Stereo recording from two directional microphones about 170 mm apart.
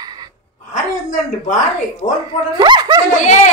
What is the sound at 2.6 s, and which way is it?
Speech, 25° right (ahead or behind).